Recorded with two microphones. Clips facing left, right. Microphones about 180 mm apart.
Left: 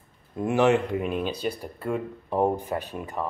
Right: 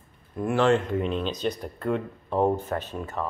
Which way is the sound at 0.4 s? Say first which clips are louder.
Left 1 dB; 15° left (ahead or behind).